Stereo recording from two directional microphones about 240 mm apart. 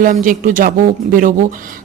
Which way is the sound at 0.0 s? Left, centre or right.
Right.